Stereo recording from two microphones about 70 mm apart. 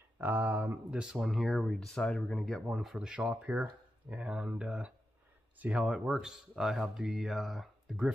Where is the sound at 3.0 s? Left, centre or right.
Centre.